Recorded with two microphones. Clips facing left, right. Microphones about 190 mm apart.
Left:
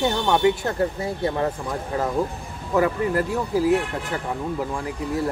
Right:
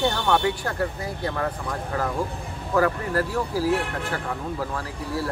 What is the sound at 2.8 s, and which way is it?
Speech, 20° left (ahead or behind).